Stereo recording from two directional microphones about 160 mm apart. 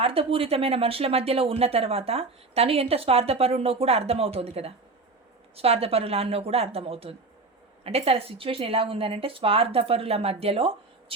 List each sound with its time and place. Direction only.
0.0 s speech: 35° right (ahead or behind)